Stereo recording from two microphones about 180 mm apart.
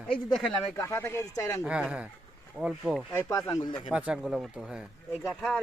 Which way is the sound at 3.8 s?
5° right (ahead or behind).